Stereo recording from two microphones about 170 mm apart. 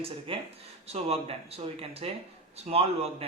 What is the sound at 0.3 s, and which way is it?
A man's voice, 30° right (ahead or behind).